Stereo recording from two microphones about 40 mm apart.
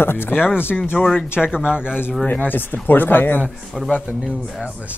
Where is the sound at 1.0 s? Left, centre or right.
Centre.